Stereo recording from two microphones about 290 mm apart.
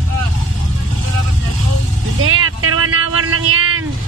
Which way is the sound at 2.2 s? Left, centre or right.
Right.